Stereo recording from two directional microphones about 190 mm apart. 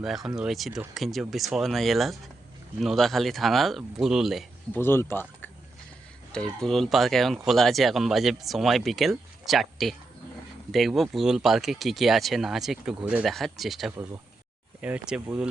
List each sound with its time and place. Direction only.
0.0 s speech: centre (ahead or behind)
4.7 s speech: 10° left (ahead or behind); by 15.4 s 5° right (ahead or behind)